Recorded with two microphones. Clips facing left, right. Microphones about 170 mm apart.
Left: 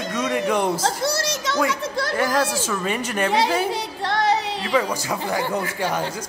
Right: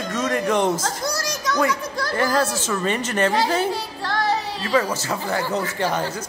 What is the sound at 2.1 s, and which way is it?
Speech, 10° left (ahead or behind).